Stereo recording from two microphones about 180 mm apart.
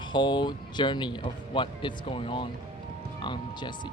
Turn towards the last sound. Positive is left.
turn(degrees=25)  # may be behind; listen again after turning